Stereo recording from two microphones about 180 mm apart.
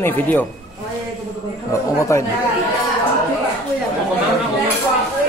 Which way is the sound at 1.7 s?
15° left (ahead or behind).